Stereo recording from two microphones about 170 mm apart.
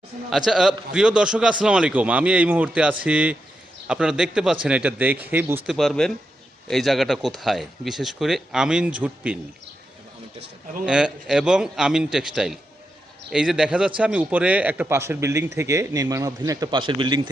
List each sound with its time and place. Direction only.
0.3 s a man's voice: centre (ahead or behind)
5.6 s speech: centre (ahead or behind)
10.8 s a man's voice: 5° right (ahead or behind); by 17.3 s 25° right (ahead or behind)